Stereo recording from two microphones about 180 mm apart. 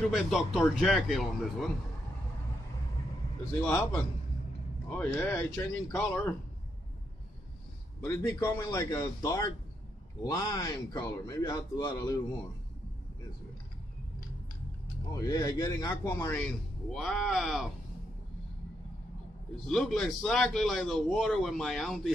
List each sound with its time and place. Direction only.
0.1 s a man's voice: centre (ahead or behind)
3.6 s a man's voice: 10° left (ahead or behind)
8.0 s a man's voice: 15° left (ahead or behind)
15.1 s speech: 20° left (ahead or behind)
16.9 s a man's voice: centre (ahead or behind)
19.6 s a man's voice: centre (ahead or behind)